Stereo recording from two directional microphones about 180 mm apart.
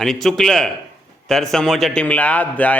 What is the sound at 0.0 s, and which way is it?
A man's voice, centre (ahead or behind).